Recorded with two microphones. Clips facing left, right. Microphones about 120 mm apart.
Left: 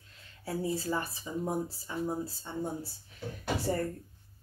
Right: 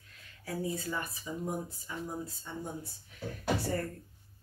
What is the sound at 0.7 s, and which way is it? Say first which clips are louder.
Speech: left 4 dB; 30° left (ahead or behind).